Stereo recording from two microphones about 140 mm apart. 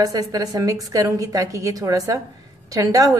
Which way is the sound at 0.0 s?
25° right (ahead or behind).